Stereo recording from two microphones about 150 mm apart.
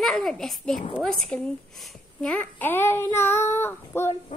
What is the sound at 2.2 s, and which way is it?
Child singing, 10° left (ahead or behind).